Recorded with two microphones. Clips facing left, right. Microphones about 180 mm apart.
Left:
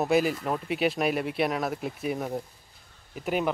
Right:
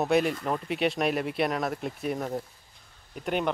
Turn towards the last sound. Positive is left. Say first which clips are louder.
# left 1 dB
turn(degrees=5)  # may be behind; listen again after turning